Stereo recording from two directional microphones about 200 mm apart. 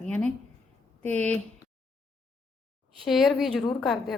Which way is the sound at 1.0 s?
5° left (ahead or behind).